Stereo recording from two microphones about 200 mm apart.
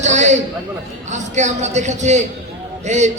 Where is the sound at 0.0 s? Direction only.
35° right (ahead or behind).